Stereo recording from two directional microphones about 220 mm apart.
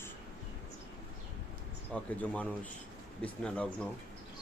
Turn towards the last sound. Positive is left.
turn(degrees=5)  # may be behind; listen again after turning